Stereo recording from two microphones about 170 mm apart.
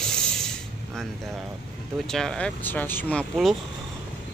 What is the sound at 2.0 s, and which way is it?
Speech, 5° left (ahead or behind).